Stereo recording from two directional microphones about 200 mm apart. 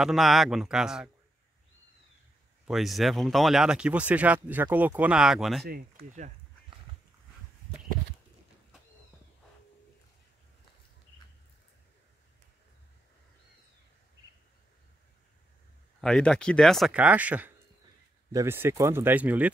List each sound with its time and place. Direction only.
0.0 s speech: centre (ahead or behind)
2.6 s speech: centre (ahead or behind)
5.7 s speech: 45° right (ahead or behind)
16.0 s speech: 5° left (ahead or behind)